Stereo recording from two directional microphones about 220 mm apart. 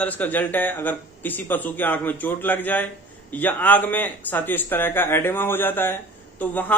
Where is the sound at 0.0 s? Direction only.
5° left (ahead or behind).